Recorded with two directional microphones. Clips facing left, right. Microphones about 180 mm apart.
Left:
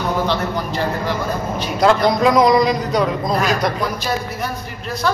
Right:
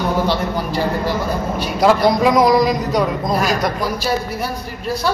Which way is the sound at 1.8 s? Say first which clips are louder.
Right 1 dB; 5° right (ahead or behind).